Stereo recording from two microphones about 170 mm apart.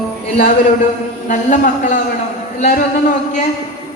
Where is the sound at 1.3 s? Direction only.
50° left (ahead or behind).